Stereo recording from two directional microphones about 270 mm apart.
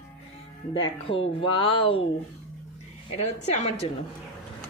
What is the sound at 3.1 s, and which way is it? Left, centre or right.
Speech, left.